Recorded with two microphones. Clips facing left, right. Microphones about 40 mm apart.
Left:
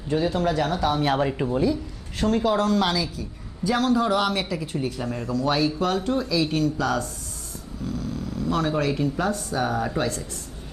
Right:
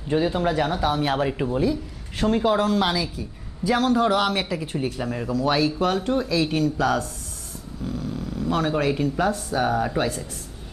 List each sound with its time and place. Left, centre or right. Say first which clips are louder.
0.1 s speech: right 1 dB; centre
0.9 s speech: even; centre
2.1 s speech: right 1 dB; centre
6.1 s speech: right 1 dB; right
6.4 s speech: right 1 dB; centre